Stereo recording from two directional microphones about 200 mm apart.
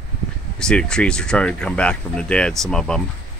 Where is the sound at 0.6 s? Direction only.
5° left (ahead or behind).